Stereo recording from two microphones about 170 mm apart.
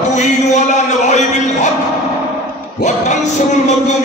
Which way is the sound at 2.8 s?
45° left (ahead or behind).